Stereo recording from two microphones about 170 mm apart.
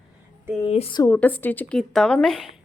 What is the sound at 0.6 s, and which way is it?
Speech, 35° left (ahead or behind).